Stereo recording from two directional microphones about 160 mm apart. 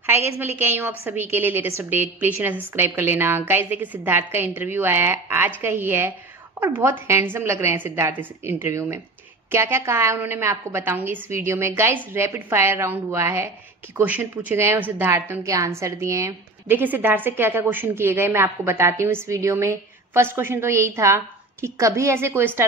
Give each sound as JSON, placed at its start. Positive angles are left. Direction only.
{"t": 0.0, "sound": "a woman's voice", "side_deg": -15}